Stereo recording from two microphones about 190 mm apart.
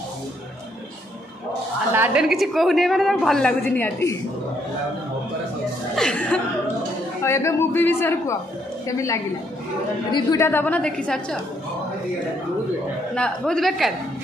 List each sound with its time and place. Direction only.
2.0 s a woman's voice: 5° right (ahead or behind)
5.9 s a woman's voice: 5° left (ahead or behind)
13.1 s a woman's voice: 5° left (ahead or behind)